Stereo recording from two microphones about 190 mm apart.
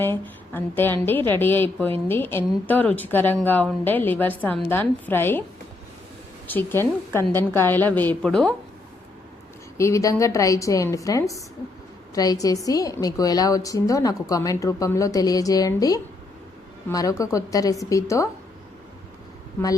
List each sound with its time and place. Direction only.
0.0 s a woman's voice: 10° left (ahead or behind)
6.5 s a woman's voice: 10° left (ahead or behind)
9.7 s a woman's voice: 15° left (ahead or behind)